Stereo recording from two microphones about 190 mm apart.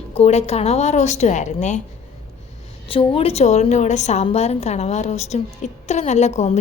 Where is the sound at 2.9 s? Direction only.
30° left (ahead or behind).